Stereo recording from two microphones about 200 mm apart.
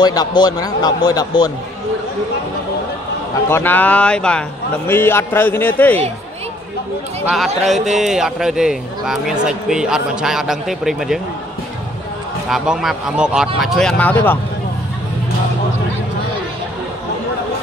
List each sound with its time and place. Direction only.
0.0 s a man's voice: 20° left (ahead or behind)
3.4 s a man's voice: 10° left (ahead or behind)
7.2 s speech: centre (ahead or behind)
12.4 s a man's voice: 5° right (ahead or behind)